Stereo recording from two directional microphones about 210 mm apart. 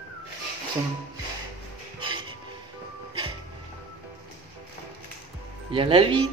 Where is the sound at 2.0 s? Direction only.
25° right (ahead or behind).